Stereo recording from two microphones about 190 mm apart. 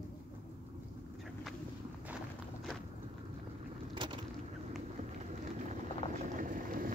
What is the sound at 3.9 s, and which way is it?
Vehicle, 25° right (ahead or behind).